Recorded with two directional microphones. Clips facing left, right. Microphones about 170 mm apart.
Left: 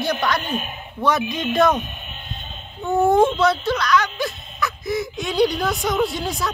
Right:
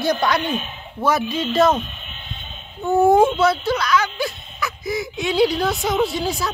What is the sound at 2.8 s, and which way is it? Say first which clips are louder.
Speech: right 2 dB; 5° right (ahead or behind).